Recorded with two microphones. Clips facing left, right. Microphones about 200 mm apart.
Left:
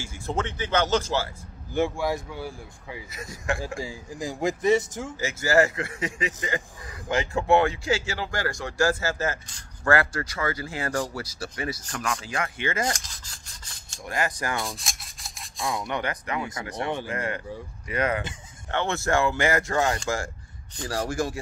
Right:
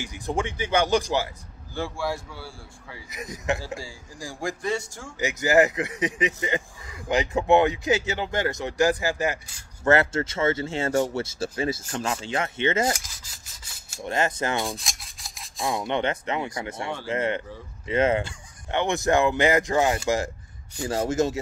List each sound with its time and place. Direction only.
0.0 s speech: 15° right (ahead or behind)
1.7 s speech: 20° left (ahead or behind)
3.1 s speech: 20° right (ahead or behind)
3.6 s a man's voice: 20° left (ahead or behind)
5.2 s speech: 20° right (ahead or behind)
12.9 s rub: 5° right (ahead or behind)
14.0 s speech: 25° right (ahead or behind)
14.6 s rub: centre (ahead or behind)
15.6 s speech: 25° right (ahead or behind)